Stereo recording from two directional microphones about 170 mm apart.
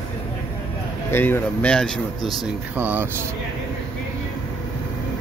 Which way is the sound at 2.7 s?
10° right (ahead or behind).